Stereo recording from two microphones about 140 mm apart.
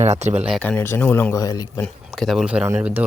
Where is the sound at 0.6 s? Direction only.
10° left (ahead or behind).